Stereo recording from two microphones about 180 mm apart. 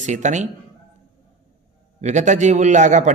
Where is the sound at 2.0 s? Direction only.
40° right (ahead or behind).